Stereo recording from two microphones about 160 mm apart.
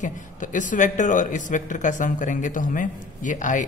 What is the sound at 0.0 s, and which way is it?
Speech, 50° left (ahead or behind).